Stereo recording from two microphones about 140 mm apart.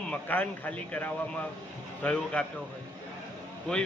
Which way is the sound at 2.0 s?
10° left (ahead or behind).